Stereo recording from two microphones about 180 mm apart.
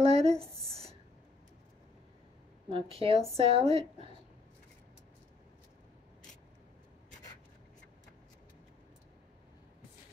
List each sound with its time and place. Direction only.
0.0 s speech: 35° right (ahead or behind)
0.6 s a sound: 35° right (ahead or behind)
2.7 s a woman's voice: 30° right (ahead or behind)